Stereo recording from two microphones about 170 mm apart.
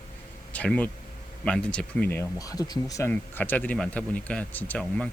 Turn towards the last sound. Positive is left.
turn(degrees=5)  # may be behind; listen again after turning